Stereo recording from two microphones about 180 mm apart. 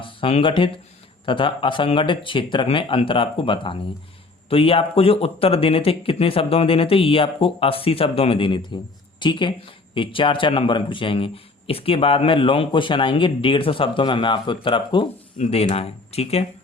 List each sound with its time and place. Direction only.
0.0 s speech: 30° left (ahead or behind)